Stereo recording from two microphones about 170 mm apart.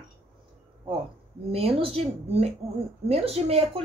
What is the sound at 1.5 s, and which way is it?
A woman's voice, 35° right (ahead or behind).